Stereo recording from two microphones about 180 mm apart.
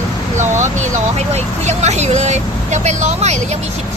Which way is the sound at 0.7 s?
40° right (ahead or behind).